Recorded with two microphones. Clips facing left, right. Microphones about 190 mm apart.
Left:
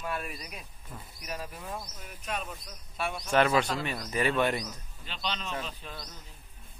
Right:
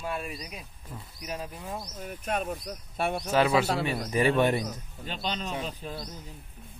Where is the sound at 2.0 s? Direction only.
50° right (ahead or behind).